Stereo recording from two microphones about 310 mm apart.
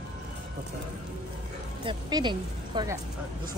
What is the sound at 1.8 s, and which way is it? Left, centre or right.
Speech, centre.